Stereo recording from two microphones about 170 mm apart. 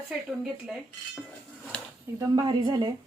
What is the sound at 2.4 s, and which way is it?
Speech, 30° right (ahead or behind).